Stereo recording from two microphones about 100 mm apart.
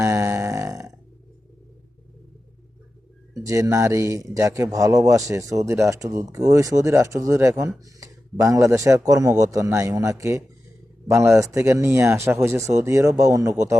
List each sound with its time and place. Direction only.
0.0 s burping: 30° right (ahead or behind)
3.3 s a man's voice: 30° right (ahead or behind)